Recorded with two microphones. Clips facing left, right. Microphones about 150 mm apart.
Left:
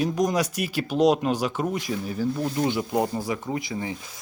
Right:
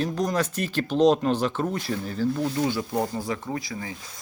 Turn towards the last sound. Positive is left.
turn(degrees=20)  # may be behind; listen again after turning